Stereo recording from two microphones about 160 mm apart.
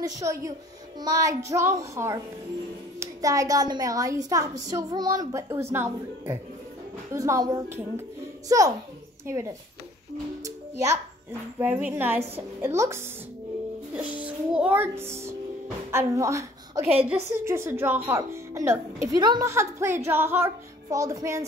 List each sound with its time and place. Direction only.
0.0 s a woman's voice: 20° right (ahead or behind)
10.4 s music: 20° right (ahead or behind)
11.6 s speech: 10° right (ahead or behind)
14.2 s music: 10° right (ahead or behind)
15.9 s a woman's voice: 15° right (ahead or behind)